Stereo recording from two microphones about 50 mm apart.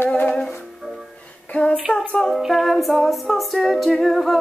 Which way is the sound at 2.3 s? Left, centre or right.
Centre.